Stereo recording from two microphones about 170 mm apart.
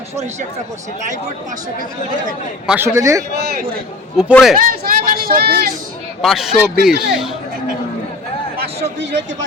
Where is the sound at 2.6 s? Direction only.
10° right (ahead or behind).